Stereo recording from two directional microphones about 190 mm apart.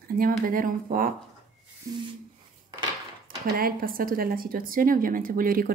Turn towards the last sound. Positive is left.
turn(degrees=-50)  # may be behind; listen again after turning